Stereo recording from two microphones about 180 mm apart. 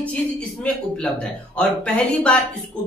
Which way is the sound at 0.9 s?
5° left (ahead or behind).